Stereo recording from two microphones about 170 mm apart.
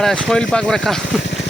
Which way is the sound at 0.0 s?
Centre (ahead or behind).